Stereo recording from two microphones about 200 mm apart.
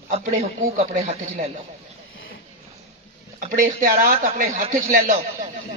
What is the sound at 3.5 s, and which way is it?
Speech, 45° right (ahead or behind).